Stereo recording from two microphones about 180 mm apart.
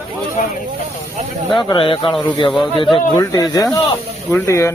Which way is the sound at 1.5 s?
25° left (ahead or behind).